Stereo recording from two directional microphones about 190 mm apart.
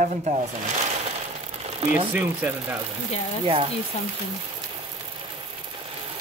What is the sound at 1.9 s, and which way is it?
Speech, 10° right (ahead or behind).